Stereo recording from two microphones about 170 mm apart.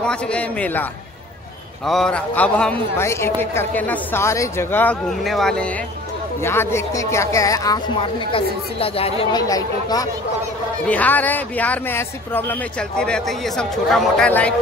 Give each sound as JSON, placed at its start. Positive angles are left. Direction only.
{"t": 0.0, "sound": "speech", "side_deg": 5}
{"t": 1.9, "sound": "speech", "side_deg": 5}
{"t": 5.2, "sound": "speech", "side_deg": 0}
{"t": 6.4, "sound": "speech", "side_deg": 15}
{"t": 9.2, "sound": "speech", "side_deg": 25}
{"t": 10.9, "sound": "speech", "side_deg": 10}